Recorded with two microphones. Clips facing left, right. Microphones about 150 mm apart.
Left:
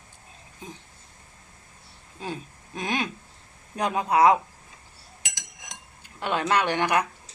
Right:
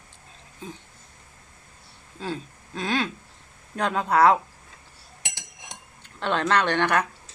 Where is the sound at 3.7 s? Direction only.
15° left (ahead or behind).